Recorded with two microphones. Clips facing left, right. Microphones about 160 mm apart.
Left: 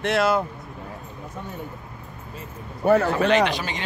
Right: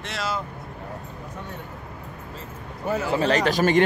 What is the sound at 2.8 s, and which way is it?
Speech, 70° left (ahead or behind).